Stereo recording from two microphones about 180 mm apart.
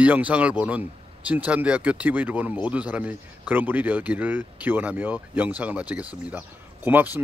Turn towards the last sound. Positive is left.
turn(degrees=-10)  # may be behind; listen again after turning